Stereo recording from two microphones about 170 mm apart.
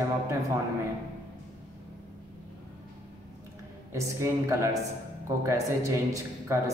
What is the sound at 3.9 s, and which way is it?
Speech, 15° right (ahead or behind).